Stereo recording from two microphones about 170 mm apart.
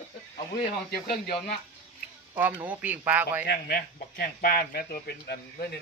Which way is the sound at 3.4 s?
60° left (ahead or behind).